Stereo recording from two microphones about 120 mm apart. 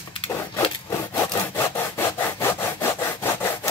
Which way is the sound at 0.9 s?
30° left (ahead or behind).